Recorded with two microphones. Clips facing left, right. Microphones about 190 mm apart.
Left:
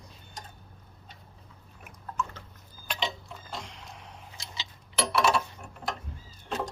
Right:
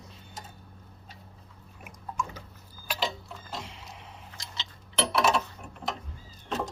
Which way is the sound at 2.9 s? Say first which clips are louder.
Right 1 dB; 5° right (ahead or behind).